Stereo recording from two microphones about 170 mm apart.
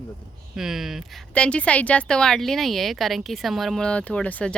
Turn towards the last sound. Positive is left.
turn(degrees=5)  # may be behind; listen again after turning